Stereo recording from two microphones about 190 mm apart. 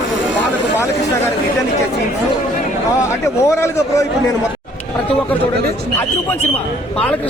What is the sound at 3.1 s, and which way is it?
Speech, 15° left (ahead or behind).